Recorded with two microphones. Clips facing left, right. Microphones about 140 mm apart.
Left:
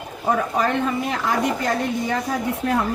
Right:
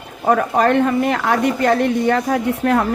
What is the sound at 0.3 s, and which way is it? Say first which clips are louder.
Speech: right 6 dB; 60° right (ahead or behind).